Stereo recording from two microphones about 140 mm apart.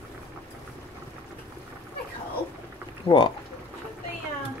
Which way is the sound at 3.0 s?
40° left (ahead or behind).